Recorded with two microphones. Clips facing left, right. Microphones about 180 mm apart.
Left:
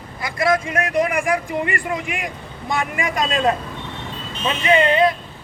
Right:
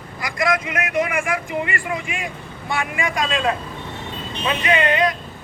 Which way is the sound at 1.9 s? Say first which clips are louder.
Left 1 dB; 55° left (ahead or behind).